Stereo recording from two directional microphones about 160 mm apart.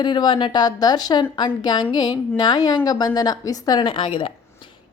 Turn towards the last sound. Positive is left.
turn(degrees=30)  # may be behind; listen again after turning